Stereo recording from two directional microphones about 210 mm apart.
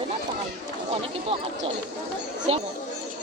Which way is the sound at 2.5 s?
30° right (ahead or behind).